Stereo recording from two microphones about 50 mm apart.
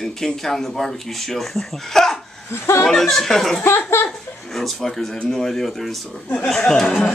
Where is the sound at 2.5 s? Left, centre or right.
Left.